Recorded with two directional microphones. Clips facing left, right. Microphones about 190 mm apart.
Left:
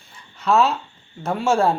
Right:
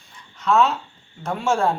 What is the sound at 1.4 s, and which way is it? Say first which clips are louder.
Speech: left 2 dB; 35° left (ahead or behind).